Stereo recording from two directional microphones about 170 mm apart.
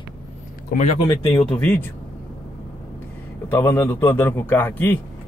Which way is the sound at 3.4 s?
15° left (ahead or behind).